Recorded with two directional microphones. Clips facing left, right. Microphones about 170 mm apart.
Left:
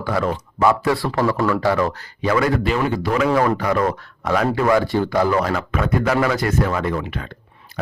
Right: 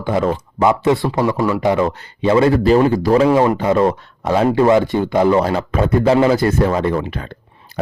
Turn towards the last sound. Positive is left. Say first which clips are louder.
# right 4 dB
turn(degrees=-35)  # may be behind; listen again after turning